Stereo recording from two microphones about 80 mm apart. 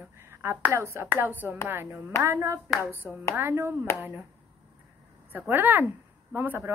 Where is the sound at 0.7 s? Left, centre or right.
Right.